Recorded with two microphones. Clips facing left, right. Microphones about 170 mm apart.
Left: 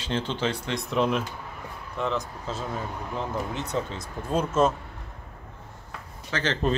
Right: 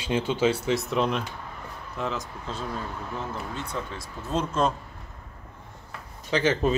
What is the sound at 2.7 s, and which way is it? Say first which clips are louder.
Speech: left 1 dB; 20° left (ahead or behind).